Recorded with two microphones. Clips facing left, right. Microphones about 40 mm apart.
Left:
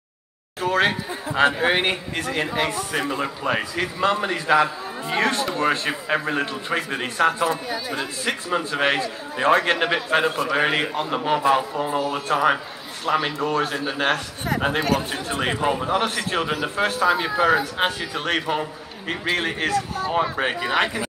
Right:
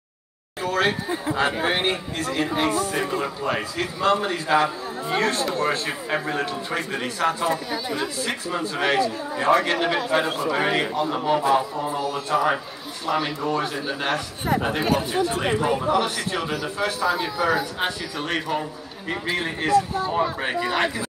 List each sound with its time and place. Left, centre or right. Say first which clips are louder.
0.7 s a sound: left 2 dB; left
1.4 s speech: left 5 dB; centre
2.1 s a man's voice: even; left
8.0 s a man's voice: even; left
13.4 s speech: left 2 dB; left
15.2 s speech: even; left
15.6 s a man's voice: even; left
16.2 s speech: left 3 dB; left
17.0 s a man's voice: left 4 dB; left
18.2 s speech: left 2 dB; left
20.1 s speech: left 1 dB; left